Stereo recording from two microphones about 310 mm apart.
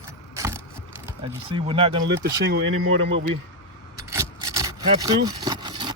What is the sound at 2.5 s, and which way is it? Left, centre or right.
Speech, right.